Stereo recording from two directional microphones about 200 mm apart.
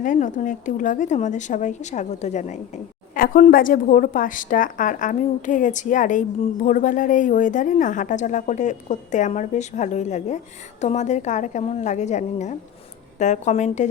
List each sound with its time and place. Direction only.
0.0 s speech: 40° left (ahead or behind)